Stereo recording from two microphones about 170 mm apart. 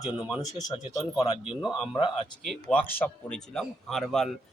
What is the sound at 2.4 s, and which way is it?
A man's voice, centre (ahead or behind).